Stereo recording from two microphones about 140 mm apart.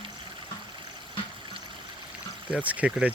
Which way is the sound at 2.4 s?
10° right (ahead or behind).